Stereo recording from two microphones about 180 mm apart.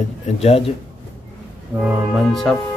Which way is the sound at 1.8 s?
Centre (ahead or behind).